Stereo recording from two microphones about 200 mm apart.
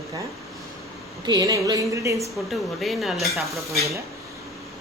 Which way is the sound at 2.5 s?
Centre (ahead or behind).